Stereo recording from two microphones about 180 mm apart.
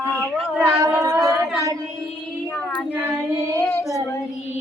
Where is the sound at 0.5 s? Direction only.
10° right (ahead or behind).